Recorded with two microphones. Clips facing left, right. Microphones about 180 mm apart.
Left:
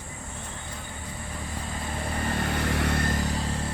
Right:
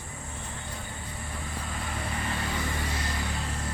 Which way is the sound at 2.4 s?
65° left (ahead or behind).